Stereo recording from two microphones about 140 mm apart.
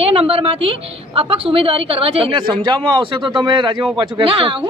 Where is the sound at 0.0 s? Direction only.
45° right (ahead or behind).